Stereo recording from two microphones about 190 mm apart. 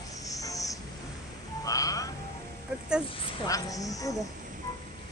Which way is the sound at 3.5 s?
20° left (ahead or behind).